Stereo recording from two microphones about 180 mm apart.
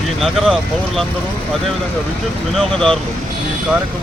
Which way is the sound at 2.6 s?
Centre (ahead or behind).